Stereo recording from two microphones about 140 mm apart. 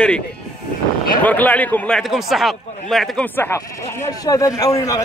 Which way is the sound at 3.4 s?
20° left (ahead or behind).